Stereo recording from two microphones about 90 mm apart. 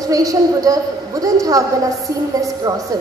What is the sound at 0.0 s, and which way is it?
A woman's voice, 40° right (ahead or behind).